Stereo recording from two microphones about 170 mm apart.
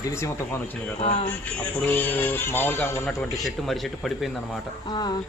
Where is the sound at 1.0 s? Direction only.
35° left (ahead or behind).